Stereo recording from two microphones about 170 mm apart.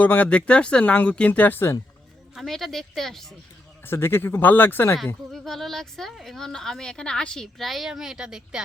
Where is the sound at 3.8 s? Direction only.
15° left (ahead or behind).